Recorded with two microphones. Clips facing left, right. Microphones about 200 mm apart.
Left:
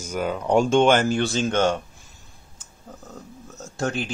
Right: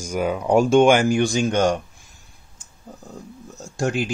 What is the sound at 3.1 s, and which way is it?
Speech, 10° right (ahead or behind).